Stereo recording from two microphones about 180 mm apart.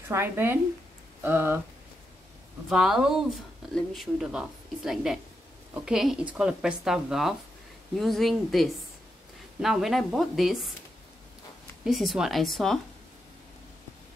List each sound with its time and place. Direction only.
0.1 s speech: 15° right (ahead or behind)
2.7 s speech: 5° right (ahead or behind)
11.8 s speech: centre (ahead or behind)